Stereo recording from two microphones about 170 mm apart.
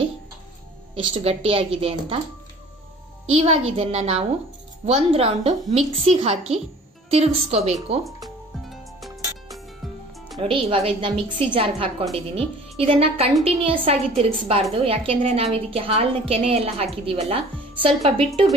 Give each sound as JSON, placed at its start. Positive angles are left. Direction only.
{"t": 0.9, "sound": "a woman's voice", "side_deg": -35}
{"t": 3.3, "sound": "a woman's voice", "side_deg": -35}
{"t": 8.0, "sound": "music", "side_deg": 0}
{"t": 10.4, "sound": "a woman's voice", "side_deg": -35}